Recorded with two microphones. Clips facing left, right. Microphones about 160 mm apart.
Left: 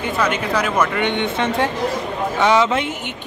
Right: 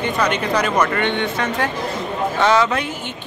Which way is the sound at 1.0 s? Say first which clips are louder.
Left 1 dB; 20° left (ahead or behind).